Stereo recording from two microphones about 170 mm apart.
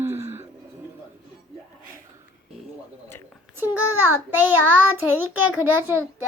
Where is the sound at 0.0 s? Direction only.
15° right (ahead or behind).